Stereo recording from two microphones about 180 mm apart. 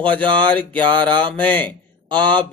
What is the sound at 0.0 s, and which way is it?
Speech, 10° left (ahead or behind).